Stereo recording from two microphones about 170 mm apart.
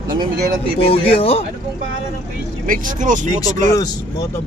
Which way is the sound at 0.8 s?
35° left (ahead or behind).